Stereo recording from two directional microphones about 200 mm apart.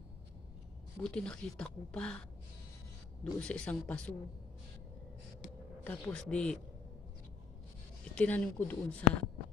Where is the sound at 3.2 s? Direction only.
5° left (ahead or behind).